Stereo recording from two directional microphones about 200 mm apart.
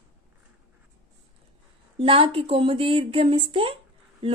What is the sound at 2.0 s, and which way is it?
Speech, 25° right (ahead or behind).